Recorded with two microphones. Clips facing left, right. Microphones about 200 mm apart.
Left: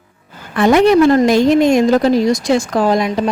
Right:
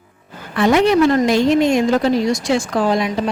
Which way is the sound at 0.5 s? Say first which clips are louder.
Left 3 dB; 45° left (ahead or behind).